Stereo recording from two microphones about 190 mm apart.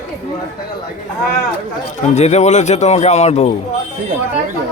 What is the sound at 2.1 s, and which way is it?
Speech, 35° left (ahead or behind).